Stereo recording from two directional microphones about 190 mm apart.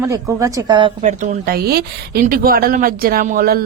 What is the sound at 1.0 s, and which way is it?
A woman's voice, 40° right (ahead or behind).